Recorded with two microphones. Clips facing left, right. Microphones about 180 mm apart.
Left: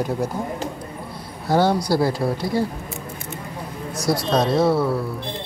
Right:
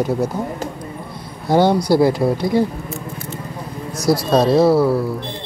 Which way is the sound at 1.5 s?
20° right (ahead or behind).